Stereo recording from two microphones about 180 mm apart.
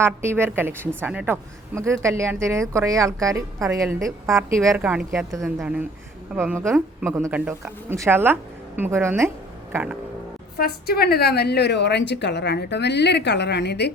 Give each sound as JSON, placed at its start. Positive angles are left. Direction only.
{"t": 0.0, "sound": "a woman's voice", "side_deg": -15}
{"t": 10.6, "sound": "a woman's voice", "side_deg": 60}